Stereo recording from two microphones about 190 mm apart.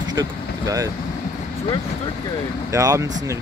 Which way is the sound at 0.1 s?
20° right (ahead or behind).